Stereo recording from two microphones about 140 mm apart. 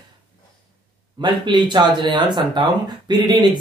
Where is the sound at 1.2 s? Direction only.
35° right (ahead or behind).